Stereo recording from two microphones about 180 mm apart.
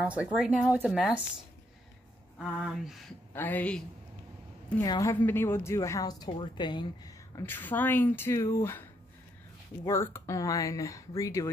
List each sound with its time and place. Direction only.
0.0 s speech: 5° right (ahead or behind)
2.3 s speech: centre (ahead or behind)
3.3 s speech: 10° left (ahead or behind)
4.8 s a woman's voice: 20° left (ahead or behind)
5.1 s speech: 10° left (ahead or behind)
9.8 s speech: 15° left (ahead or behind)